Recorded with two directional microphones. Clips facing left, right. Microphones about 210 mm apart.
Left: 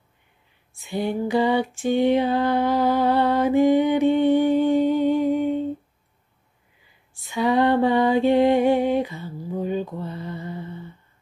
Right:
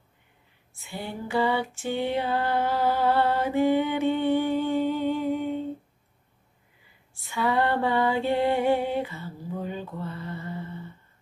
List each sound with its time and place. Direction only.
0.7 s female singing: 15° left (ahead or behind)
7.2 s music: 15° left (ahead or behind)